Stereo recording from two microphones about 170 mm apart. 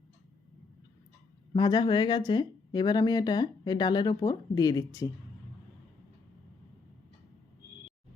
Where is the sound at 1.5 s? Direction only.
25° left (ahead or behind).